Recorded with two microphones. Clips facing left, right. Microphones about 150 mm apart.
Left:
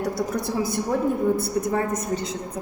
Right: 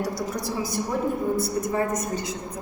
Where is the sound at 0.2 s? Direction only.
55° left (ahead or behind).